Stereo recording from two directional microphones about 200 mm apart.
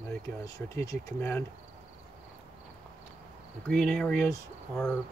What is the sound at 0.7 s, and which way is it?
Speech, 10° left (ahead or behind).